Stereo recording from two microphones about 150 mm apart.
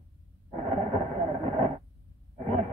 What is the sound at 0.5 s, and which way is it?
Radio, 45° right (ahead or behind).